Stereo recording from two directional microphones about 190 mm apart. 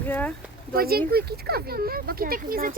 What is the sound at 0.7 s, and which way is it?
Speech, 50° right (ahead or behind).